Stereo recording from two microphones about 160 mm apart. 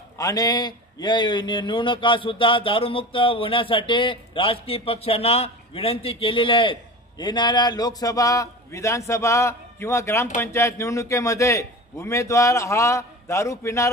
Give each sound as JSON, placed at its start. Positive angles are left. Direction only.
{"t": 0.2, "sound": "a man's voice", "side_deg": 25}